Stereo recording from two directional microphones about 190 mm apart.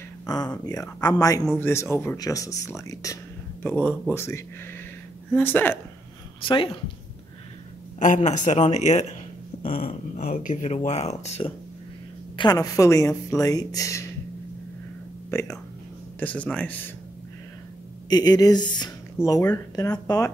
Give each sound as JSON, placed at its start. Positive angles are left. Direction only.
{"t": 0.3, "sound": "a woman's voice", "side_deg": 20}
{"t": 3.6, "sound": "a woman's voice", "side_deg": 5}
{"t": 6.4, "sound": "speech", "side_deg": 25}
{"t": 8.0, "sound": "speech", "side_deg": 40}
{"t": 12.4, "sound": "a woman's voice", "side_deg": 20}
{"t": 15.3, "sound": "a woman's voice", "side_deg": 15}
{"t": 18.1, "sound": "a woman's voice", "side_deg": 20}